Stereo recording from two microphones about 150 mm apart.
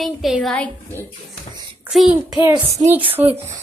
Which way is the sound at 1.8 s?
5° right (ahead or behind).